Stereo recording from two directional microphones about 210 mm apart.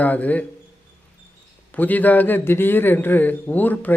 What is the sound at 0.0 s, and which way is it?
Speech, 5° left (ahead or behind).